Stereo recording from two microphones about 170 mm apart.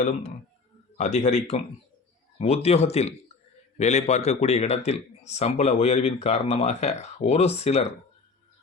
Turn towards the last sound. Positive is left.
turn(degrees=40)  # may be behind; listen again after turning